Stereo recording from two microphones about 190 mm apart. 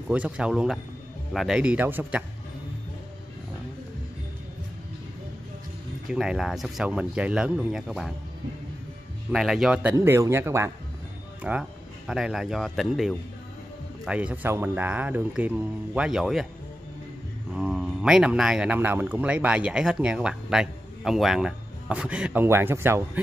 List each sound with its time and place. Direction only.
0.1 s speech: 5° right (ahead or behind)
6.0 s speech: centre (ahead or behind)
9.3 s speech: centre (ahead or behind)
9.9 s speech: 15° right (ahead or behind)
17.6 s speech: 5° right (ahead or behind)